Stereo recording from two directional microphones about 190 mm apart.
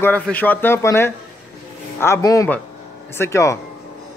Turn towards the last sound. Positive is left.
turn(degrees=15)  # may be behind; listen again after turning